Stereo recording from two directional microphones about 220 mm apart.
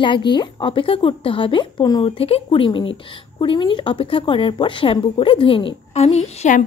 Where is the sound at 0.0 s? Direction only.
20° left (ahead or behind).